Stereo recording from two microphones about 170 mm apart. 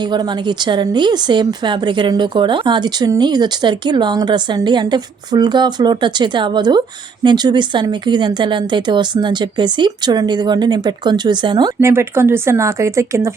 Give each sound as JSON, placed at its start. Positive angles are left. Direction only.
{"t": 0.0, "sound": "speech", "side_deg": -25}